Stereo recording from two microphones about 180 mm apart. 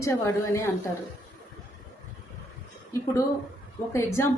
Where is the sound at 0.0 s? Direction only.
15° left (ahead or behind).